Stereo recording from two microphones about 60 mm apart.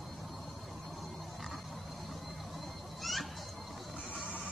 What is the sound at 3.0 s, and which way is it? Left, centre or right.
Children playing, centre.